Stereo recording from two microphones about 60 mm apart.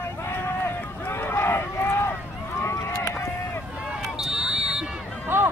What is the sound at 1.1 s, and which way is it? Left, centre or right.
Run, left.